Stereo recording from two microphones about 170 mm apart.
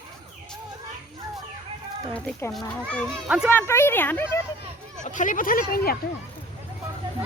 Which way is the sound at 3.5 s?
15° left (ahead or behind).